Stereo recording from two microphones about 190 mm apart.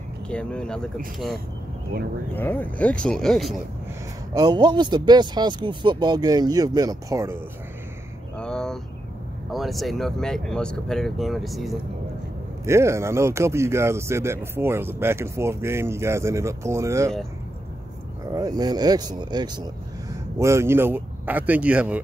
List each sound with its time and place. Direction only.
0.3 s speech: 5° left (ahead or behind)
2.3 s speech: 10° left (ahead or behind)
4.3 s speech: 20° right (ahead or behind)
8.4 s a sound: 5° left (ahead or behind)
9.5 s speech: centre (ahead or behind)
12.6 s speech: 15° right (ahead or behind)
18.6 s speech: 20° right (ahead or behind)